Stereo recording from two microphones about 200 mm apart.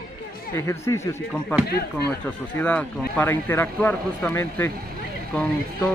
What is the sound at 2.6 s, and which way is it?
Speech, 5° left (ahead or behind).